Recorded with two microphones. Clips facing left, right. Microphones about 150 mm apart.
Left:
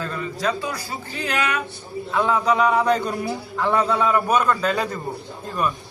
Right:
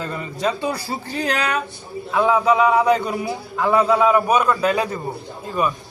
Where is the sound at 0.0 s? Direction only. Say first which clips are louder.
Right 1 dB; 20° right (ahead or behind); by 1.5 s 35° right (ahead or behind).